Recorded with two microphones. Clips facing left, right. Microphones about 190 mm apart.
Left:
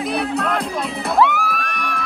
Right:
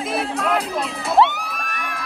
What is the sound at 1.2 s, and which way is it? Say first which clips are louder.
Crowd: even; 30° right (ahead or behind).